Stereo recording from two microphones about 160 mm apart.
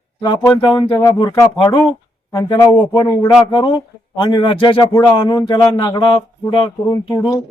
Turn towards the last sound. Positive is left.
turn(degrees=25)  # may be behind; listen again after turning